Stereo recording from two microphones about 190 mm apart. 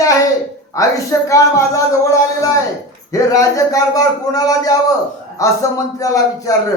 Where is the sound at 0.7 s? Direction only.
15° left (ahead or behind).